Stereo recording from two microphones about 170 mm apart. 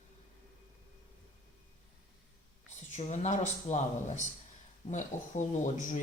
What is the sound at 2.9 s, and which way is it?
A man's voice, 45° left (ahead or behind).